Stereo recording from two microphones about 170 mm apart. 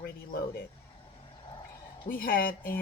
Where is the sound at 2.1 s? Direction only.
60° left (ahead or behind).